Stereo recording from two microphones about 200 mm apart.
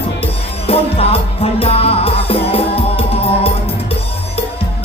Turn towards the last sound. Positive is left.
turn(degrees=30)  # may be behind; listen again after turning